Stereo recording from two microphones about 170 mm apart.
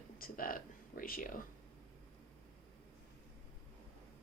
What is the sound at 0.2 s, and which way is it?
Speech, 55° left (ahead or behind).